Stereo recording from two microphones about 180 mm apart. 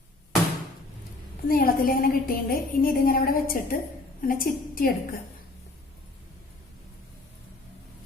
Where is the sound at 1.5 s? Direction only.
55° left (ahead or behind).